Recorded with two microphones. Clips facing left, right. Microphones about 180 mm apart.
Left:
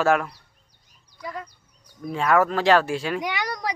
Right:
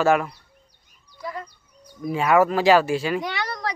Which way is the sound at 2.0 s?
5° right (ahead or behind).